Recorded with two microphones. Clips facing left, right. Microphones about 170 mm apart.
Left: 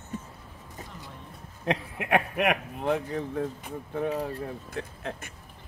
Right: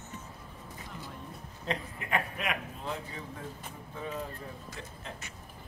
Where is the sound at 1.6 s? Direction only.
70° left (ahead or behind).